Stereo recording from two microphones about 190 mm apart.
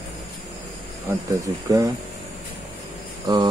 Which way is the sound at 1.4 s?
15° right (ahead or behind).